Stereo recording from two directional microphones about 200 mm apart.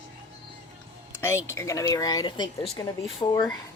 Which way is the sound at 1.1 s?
15° left (ahead or behind).